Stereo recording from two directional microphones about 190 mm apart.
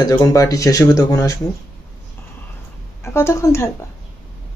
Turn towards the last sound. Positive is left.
turn(degrees=15)  # may be behind; listen again after turning